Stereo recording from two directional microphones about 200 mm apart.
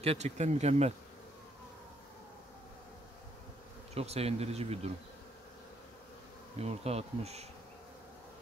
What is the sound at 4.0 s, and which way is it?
Speech, 30° right (ahead or behind).